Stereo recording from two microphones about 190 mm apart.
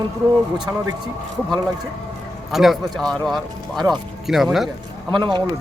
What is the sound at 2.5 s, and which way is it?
Speech, centre (ahead or behind).